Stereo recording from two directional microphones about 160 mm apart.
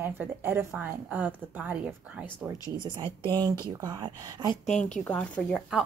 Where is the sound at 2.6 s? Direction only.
30° right (ahead or behind).